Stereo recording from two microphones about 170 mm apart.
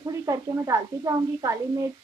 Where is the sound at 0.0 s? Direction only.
20° right (ahead or behind).